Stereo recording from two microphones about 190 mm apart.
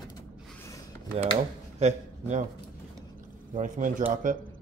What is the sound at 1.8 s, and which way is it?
Speech, 40° right (ahead or behind).